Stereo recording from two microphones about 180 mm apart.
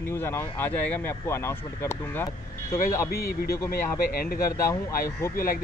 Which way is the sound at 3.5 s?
15° left (ahead or behind).